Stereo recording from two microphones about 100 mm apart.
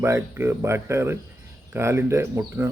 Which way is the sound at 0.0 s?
25° right (ahead or behind).